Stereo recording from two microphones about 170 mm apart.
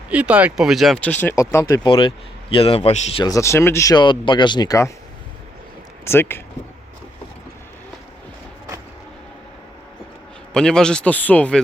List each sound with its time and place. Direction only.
0.1 s a man's voice: 5° right (ahead or behind); by 3.2 s 35° left (ahead or behind)
3.2 s speech: 20° left (ahead or behind)
6.1 s speech: 15° left (ahead or behind)
10.5 s speech: 5° left (ahead or behind)